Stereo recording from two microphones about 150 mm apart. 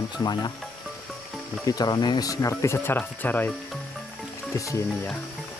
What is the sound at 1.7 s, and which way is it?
Speech, 25° left (ahead or behind).